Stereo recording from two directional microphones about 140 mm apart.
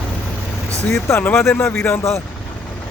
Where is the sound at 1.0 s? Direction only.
15° left (ahead or behind).